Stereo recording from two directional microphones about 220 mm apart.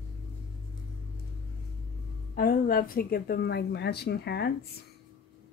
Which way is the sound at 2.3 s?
40° left (ahead or behind).